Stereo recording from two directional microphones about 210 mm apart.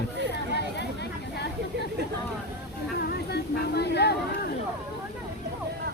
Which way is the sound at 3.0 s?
50° left (ahead or behind).